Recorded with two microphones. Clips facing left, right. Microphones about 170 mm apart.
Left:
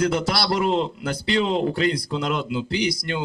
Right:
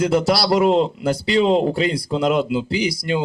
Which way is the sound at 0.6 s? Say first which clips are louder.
Right 6 dB; 40° right (ahead or behind).